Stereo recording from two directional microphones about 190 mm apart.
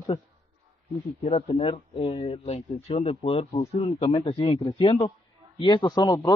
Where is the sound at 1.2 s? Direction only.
35° left (ahead or behind).